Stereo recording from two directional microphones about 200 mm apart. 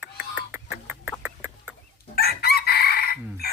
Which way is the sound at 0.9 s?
10° right (ahead or behind).